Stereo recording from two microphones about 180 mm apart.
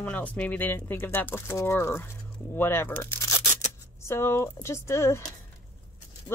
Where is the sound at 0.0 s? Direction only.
10° left (ahead or behind).